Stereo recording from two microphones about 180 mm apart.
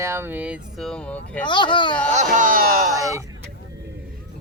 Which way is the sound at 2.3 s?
50° right (ahead or behind).